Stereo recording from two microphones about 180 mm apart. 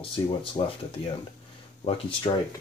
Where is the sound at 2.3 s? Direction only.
25° left (ahead or behind).